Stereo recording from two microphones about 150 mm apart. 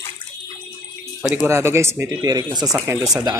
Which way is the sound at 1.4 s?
15° right (ahead or behind).